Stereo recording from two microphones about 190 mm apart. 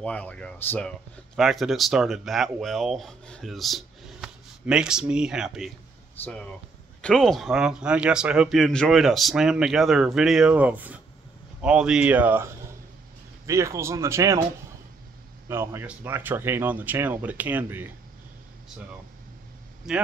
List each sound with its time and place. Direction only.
0.0 s speech: 5° left (ahead or behind)
7.0 s speech: 5° left (ahead or behind); by 14.4 s 15° right (ahead or behind)
15.4 s speech: 15° right (ahead or behind)